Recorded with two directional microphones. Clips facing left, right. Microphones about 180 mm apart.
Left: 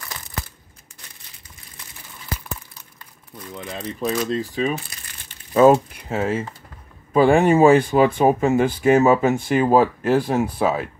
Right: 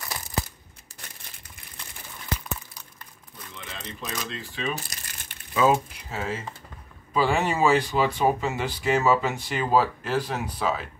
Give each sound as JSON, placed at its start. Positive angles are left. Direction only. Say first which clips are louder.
{"t": 0.1, "sound": "crumpling", "louder": "right 3 dB", "side_deg": -15}
{"t": 3.5, "sound": "speech", "louder": "left 10 dB", "side_deg": 45}
{"t": 4.7, "sound": "crumpling", "louder": "left 4 dB", "side_deg": -40}
{"t": 5.5, "sound": "speech", "louder": "left 8 dB", "side_deg": 50}